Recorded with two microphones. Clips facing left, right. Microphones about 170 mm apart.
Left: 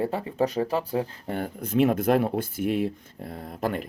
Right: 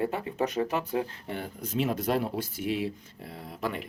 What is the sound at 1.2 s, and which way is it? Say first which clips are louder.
Speech: left 5 dB; 50° left (ahead or behind).